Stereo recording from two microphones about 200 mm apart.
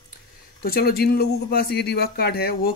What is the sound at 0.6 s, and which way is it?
Speech, 50° left (ahead or behind).